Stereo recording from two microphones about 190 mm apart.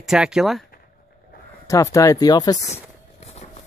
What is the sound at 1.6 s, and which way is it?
Speech, 15° left (ahead or behind).